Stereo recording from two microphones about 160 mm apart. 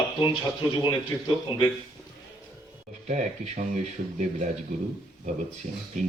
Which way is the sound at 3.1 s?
45° right (ahead or behind).